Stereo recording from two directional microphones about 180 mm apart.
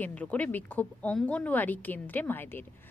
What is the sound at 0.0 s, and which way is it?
Speech, 10° left (ahead or behind).